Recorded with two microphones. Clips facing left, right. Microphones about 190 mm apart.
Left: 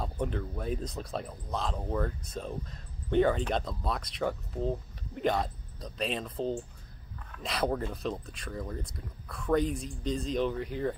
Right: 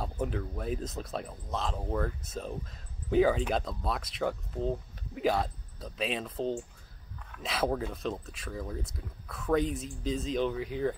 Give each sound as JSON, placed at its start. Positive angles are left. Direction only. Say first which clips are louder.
{"t": 0.0, "sound": "speech", "louder": "even", "side_deg": 0}